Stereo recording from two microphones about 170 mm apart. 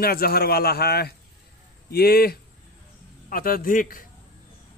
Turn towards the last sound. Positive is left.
turn(degrees=55)  # may be behind; listen again after turning